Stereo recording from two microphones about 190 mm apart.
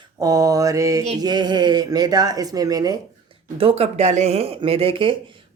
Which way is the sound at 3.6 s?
30° right (ahead or behind).